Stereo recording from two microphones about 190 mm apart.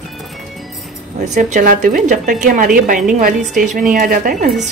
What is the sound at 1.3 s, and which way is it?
A woman's voice, 45° right (ahead or behind).